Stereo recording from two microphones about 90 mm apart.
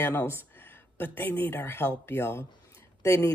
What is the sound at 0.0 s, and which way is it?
Speech, 25° left (ahead or behind).